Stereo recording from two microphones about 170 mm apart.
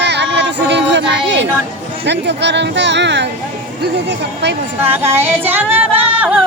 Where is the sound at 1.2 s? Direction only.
90° right.